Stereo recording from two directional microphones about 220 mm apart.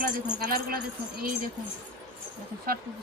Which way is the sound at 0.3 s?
40° right (ahead or behind).